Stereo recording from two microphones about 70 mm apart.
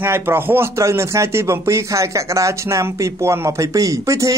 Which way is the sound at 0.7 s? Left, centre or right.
Right.